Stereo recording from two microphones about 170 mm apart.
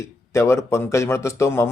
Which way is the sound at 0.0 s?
15° left (ahead or behind).